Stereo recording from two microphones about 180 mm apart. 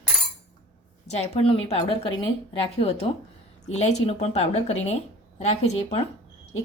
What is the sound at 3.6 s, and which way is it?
Speech, 40° left (ahead or behind).